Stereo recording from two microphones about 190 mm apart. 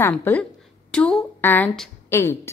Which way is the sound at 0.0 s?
10° left (ahead or behind).